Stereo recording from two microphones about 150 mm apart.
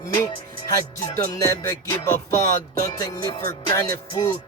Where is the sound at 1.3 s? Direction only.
20° left (ahead or behind).